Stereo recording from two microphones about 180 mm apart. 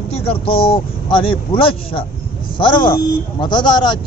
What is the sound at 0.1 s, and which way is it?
Speech, 30° left (ahead or behind).